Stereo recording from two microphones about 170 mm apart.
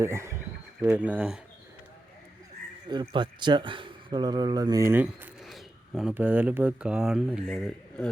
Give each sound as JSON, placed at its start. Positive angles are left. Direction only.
{"t": 0.0, "sound": "speech", "side_deg": -15}
{"t": 2.8, "sound": "speech", "side_deg": -25}